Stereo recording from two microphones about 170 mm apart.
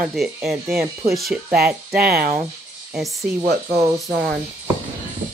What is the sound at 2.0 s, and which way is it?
Speech, 65° right (ahead or behind).